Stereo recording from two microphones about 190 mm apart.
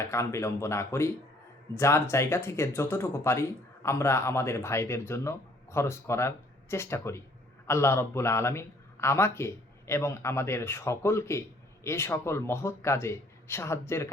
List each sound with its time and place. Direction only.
0.0 s a man's voice: 15° left (ahead or behind)